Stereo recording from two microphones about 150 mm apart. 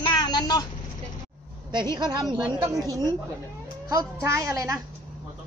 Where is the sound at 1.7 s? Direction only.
30° right (ahead or behind).